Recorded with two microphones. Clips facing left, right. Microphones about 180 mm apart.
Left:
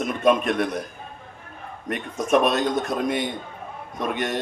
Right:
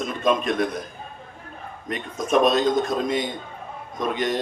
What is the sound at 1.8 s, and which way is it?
A man's voice, 60° left (ahead or behind).